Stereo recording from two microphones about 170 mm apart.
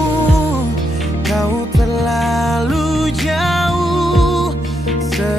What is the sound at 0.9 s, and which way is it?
Music, centre (ahead or behind).